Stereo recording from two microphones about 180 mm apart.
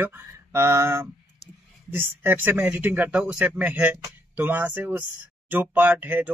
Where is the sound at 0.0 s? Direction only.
15° right (ahead or behind).